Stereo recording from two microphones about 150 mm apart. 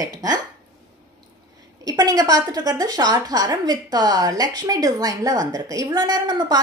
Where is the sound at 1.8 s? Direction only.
25° right (ahead or behind).